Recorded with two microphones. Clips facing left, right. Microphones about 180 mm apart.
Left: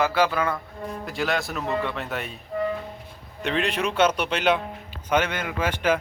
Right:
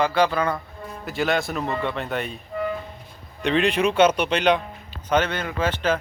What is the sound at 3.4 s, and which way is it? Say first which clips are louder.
Speech: right 5 dB; centre (ahead or behind).